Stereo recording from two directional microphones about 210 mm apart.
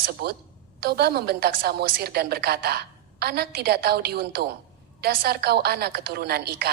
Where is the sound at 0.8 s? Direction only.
50° right (ahead or behind).